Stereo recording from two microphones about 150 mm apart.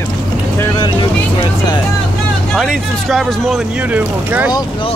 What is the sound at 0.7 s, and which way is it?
Speech, 30° left (ahead or behind).